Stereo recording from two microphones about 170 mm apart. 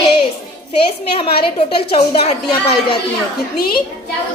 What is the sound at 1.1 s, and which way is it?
A woman's voice, 35° left (ahead or behind).